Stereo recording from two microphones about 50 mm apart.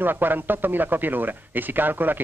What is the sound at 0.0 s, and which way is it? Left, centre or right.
Speech, right.